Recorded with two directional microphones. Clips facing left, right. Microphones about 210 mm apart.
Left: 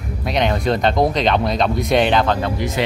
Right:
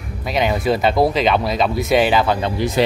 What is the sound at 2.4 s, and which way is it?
Speech, 35° right (ahead or behind).